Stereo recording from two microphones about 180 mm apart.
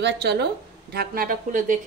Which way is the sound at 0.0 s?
65° right (ahead or behind).